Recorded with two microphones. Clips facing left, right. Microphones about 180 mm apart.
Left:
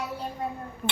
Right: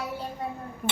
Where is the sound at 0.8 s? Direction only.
10° right (ahead or behind).